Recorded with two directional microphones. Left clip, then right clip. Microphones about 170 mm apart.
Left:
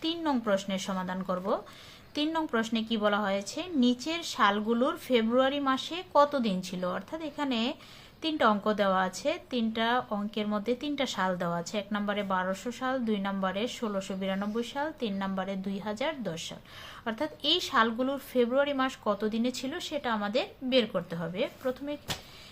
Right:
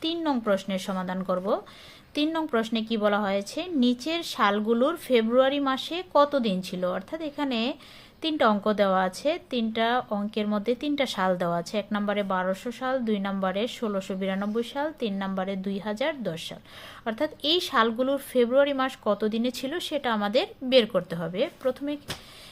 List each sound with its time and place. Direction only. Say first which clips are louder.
0.0 s a woman's voice: right 3 dB; 30° right (ahead or behind)